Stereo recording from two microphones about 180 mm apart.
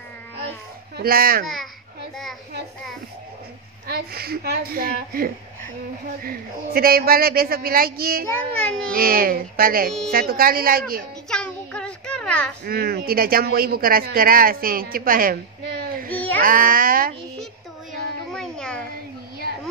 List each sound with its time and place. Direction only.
0.9 s speech: 55° right (ahead or behind)
3.8 s speech: 60° right (ahead or behind)
8.3 s a child's voice: 5° left (ahead or behind)
8.9 s speech: 55° right (ahead or behind)
11.2 s a sound: 5° left (ahead or behind)
12.6 s speech: 60° right (ahead or behind)
16.1 s child singing: 10° left (ahead or behind)
16.3 s a sound: 50° right (ahead or behind)
18.3 s a sound: 5° left (ahead or behind)